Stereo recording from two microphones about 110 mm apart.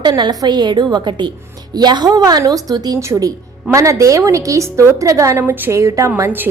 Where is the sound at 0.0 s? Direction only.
40° right (ahead or behind).